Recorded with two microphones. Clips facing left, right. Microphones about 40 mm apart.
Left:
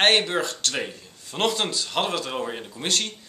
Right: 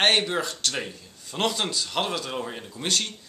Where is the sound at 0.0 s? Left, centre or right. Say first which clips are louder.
Left 2 dB; centre.